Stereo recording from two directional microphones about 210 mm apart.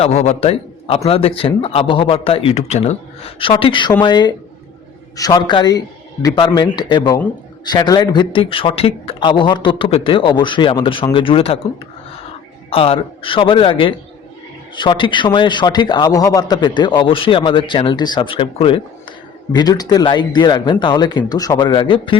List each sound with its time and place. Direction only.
0.0 s a man's voice: 30° left (ahead or behind)
12.7 s a man's voice: 25° left (ahead or behind)